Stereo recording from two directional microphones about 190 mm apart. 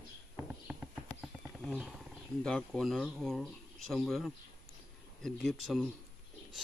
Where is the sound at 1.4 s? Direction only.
Centre (ahead or behind).